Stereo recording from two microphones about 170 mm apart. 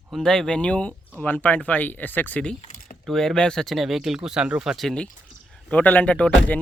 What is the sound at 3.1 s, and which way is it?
Speech, 5° left (ahead or behind).